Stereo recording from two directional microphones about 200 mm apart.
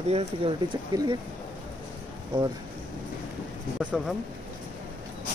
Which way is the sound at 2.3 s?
25° right (ahead or behind).